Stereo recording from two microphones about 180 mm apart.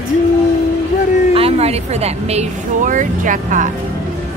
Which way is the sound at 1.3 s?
35° right (ahead or behind).